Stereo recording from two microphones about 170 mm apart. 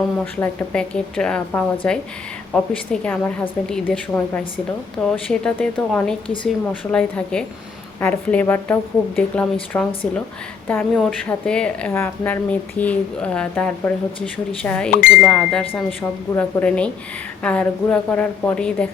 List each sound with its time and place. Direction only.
0.3 s a woman's voice: 5° left (ahead or behind)
6.2 s a woman's voice: 30° left (ahead or behind)
6.9 s a woman's voice: 5° left (ahead or behind)